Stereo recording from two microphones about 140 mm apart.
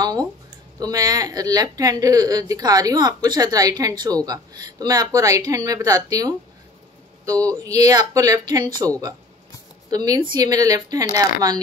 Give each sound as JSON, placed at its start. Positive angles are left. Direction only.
{"t": 0.0, "sound": "speech", "side_deg": -25}
{"t": 9.8, "sound": "speech", "side_deg": -25}